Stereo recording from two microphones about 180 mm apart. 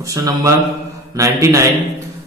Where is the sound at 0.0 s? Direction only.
20° right (ahead or behind).